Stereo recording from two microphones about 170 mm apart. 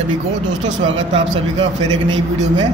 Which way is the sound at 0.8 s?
35° right (ahead or behind).